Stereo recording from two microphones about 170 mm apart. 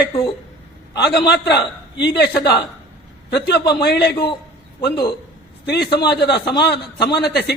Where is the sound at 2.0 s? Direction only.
85° left.